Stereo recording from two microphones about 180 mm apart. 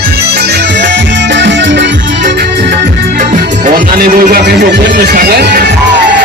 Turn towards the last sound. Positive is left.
turn(degrees=-55)  # may be behind; listen again after turning